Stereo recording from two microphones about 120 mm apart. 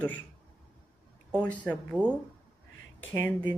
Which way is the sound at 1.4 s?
10° left (ahead or behind).